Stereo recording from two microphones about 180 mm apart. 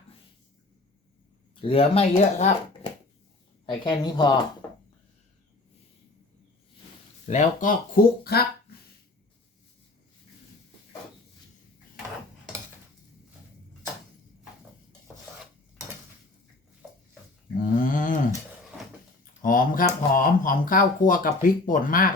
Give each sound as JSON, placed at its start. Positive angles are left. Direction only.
{"t": 1.6, "sound": "speech", "side_deg": 30}
{"t": 3.7, "sound": "speech", "side_deg": 25}
{"t": 7.3, "sound": "speech", "side_deg": 40}
{"t": 8.2, "sound": "speech", "side_deg": 60}
{"t": 17.6, "sound": "a sound", "side_deg": 50}
{"t": 19.2, "sound": "speech", "side_deg": 50}